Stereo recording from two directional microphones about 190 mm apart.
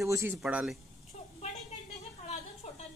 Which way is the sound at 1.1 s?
35° left (ahead or behind).